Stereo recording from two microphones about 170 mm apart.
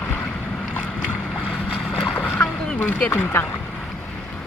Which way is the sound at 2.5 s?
5° left (ahead or behind).